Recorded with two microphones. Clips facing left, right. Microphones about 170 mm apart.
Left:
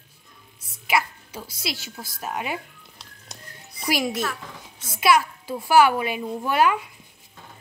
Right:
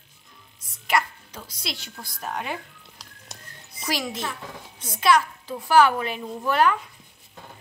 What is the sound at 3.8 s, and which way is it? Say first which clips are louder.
A woman's voice: left 4 dB; 10° left (ahead or behind).